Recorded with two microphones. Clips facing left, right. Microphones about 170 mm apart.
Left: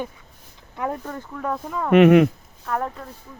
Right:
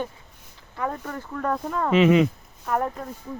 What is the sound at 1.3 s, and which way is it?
Speech, 5° left (ahead or behind).